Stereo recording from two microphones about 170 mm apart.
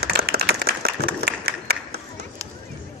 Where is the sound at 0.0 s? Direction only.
65° right (ahead or behind).